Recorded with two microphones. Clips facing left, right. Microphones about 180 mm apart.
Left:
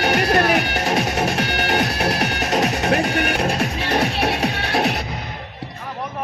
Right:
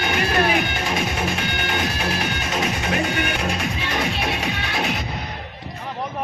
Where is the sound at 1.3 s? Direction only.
70° left (ahead or behind).